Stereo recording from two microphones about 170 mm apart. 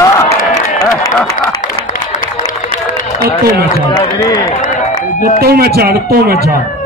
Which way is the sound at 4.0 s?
20° left (ahead or behind).